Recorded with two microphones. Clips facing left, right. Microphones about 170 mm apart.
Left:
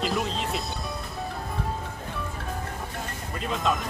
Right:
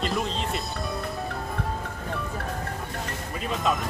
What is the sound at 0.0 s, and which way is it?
Music, centre (ahead or behind).